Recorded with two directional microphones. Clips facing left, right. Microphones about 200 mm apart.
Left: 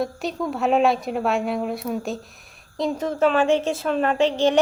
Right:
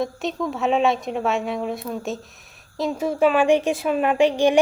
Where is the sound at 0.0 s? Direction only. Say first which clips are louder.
Even; centre (ahead or behind).